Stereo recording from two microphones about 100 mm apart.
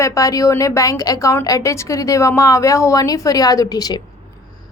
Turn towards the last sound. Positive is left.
turn(degrees=40)  # may be behind; listen again after turning